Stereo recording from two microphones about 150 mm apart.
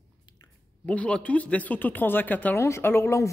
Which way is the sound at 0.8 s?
10° left (ahead or behind).